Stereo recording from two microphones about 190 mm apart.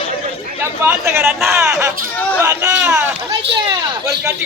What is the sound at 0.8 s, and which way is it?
Speech, 15° right (ahead or behind).